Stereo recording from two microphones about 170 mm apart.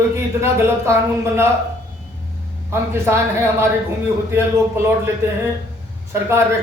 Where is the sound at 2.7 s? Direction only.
15° right (ahead or behind).